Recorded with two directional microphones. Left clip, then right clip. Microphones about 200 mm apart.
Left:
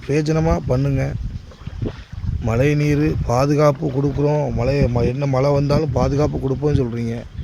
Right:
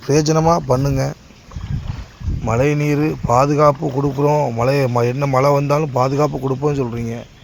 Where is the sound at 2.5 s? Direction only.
15° left (ahead or behind).